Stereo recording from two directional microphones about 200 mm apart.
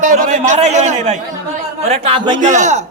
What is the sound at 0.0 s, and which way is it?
A man's voice, 40° right (ahead or behind).